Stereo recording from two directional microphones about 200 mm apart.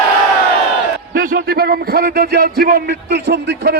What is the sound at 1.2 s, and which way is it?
A man's voice, 45° right (ahead or behind).